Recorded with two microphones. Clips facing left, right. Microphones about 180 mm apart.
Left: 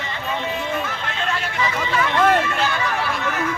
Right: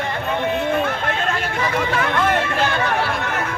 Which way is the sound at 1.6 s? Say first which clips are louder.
Right 1 dB; 55° right (ahead or behind).